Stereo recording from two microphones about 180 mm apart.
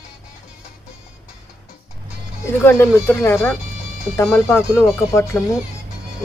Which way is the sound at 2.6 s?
15° left (ahead or behind).